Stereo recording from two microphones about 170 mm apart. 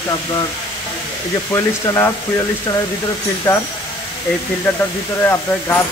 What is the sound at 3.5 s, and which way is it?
Speech, 15° left (ahead or behind).